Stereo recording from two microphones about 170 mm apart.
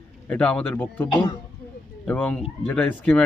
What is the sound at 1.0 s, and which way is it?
Speech, 25° left (ahead or behind).